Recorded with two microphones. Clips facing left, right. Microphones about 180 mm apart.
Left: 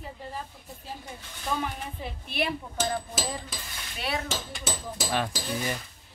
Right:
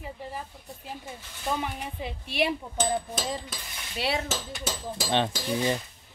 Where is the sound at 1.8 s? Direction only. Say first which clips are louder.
Right 2 dB; 15° right (ahead or behind).